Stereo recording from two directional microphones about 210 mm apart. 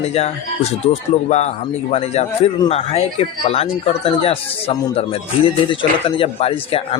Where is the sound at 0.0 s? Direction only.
30° left (ahead or behind).